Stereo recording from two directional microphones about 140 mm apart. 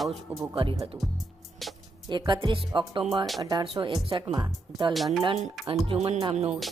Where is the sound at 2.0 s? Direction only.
30° right (ahead or behind).